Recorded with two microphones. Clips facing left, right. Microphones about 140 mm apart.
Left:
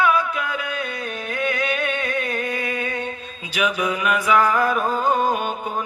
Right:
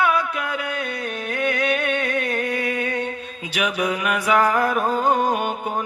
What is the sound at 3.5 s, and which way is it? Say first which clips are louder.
Music: left 1 dB; 60° right (ahead or behind).